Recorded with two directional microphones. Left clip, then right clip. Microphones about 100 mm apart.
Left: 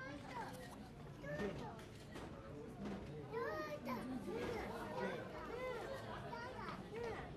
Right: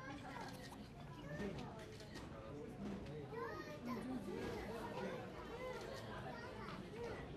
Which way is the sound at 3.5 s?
15° left (ahead or behind).